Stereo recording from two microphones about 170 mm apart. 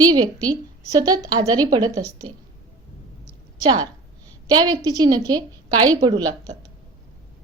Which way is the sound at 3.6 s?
25° right (ahead or behind).